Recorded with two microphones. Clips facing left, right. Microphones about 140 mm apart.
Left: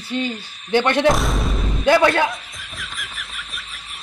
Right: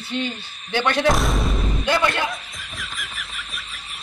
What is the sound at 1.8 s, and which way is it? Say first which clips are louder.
Speech: left 7 dB; 50° left (ahead or behind).